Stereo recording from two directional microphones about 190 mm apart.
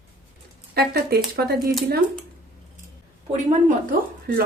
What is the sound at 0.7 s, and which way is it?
Speech, 55° right (ahead or behind).